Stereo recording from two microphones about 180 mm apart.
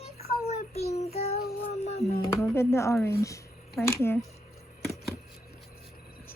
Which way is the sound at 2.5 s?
15° left (ahead or behind).